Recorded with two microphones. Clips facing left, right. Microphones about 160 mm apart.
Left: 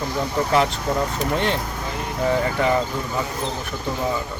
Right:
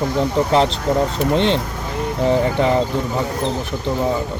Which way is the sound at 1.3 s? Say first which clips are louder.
Right 6 dB; 25° right (ahead or behind).